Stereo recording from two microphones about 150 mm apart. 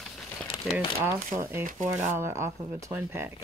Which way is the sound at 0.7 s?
5° right (ahead or behind).